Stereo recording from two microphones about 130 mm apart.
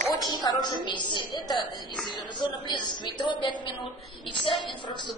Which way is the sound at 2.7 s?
35° left (ahead or behind).